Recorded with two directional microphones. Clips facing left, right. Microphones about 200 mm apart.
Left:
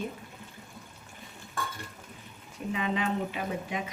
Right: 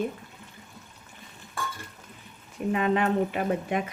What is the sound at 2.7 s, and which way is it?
Speech, 55° right (ahead or behind).